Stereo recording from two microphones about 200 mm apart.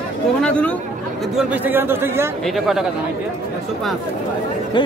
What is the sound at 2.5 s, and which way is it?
Speech, centre (ahead or behind).